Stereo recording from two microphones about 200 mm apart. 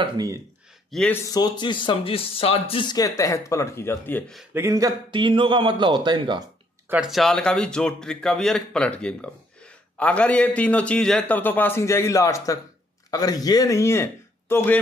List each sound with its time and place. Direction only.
0.0 s speech: 15° right (ahead or behind)
0.9 s a man's voice: 5° left (ahead or behind)
1.2 s speech: 20° left (ahead or behind)
4.4 s speech: 15° right (ahead or behind)
6.9 s a man's voice: 5° right (ahead or behind)